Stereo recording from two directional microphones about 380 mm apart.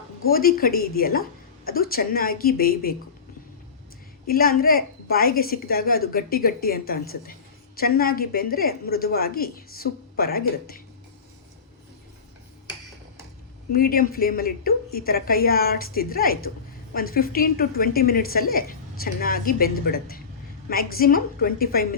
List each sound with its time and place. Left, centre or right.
0.2 s a woman's voice: left
4.3 s a woman's voice: left
13.7 s a woman's voice: left